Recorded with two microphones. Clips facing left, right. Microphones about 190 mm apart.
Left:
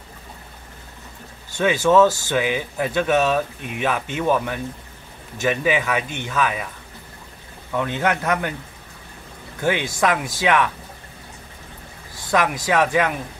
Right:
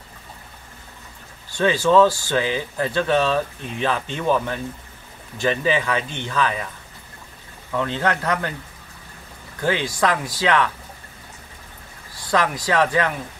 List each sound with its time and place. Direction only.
1.6 s speech: 10° left (ahead or behind)
7.7 s speech: 15° left (ahead or behind)
9.6 s speech: 15° left (ahead or behind)
12.3 s speech: 20° left (ahead or behind)